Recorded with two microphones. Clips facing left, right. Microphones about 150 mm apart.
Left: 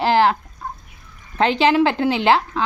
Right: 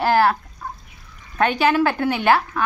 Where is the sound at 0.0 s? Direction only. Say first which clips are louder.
Left 1 dB; 20° left (ahead or behind).